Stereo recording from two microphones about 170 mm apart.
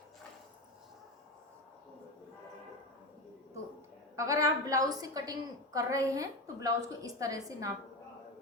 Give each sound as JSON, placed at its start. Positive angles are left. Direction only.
{"t": 4.2, "sound": "a woman's voice", "side_deg": -20}